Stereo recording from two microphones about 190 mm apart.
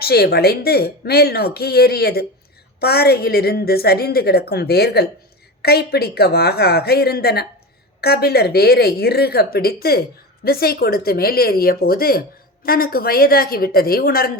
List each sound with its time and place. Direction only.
0.0 s speech: 55° left (ahead or behind)